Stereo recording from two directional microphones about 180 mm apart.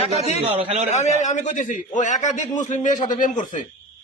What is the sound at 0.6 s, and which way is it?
Speech, 35° right (ahead or behind).